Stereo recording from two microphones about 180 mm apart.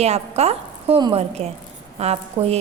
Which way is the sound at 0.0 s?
35° right (ahead or behind).